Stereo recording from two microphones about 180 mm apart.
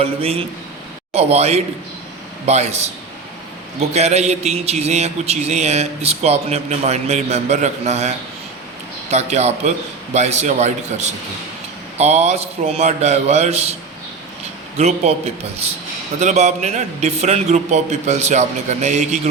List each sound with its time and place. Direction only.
0.0 s a man's voice: 35° right (ahead or behind)
14.8 s a man's voice: 35° right (ahead or behind)